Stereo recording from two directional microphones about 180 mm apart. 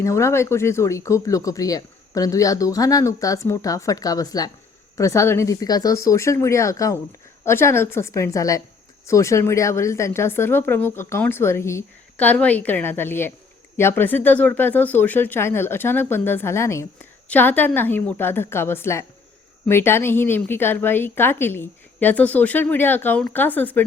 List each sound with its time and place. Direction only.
0.0 s a woman's voice: 15° left (ahead or behind)